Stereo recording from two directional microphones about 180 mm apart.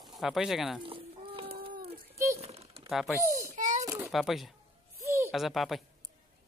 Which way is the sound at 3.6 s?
40° right (ahead or behind).